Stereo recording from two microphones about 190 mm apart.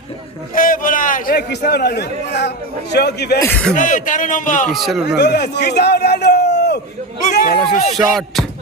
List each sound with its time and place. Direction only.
0.5 s a man's voice: 45° left (ahead or behind)
3.4 s speech: 5° left (ahead or behind)
3.8 s a man's voice: 45° left (ahead or behind)
4.7 s music: centre (ahead or behind)
5.0 s speech: 60° left (ahead or behind)
7.3 s speech: 40° left (ahead or behind)
7.9 s music: centre (ahead or behind)